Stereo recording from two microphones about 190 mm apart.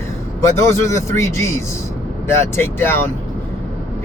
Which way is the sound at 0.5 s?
15° left (ahead or behind).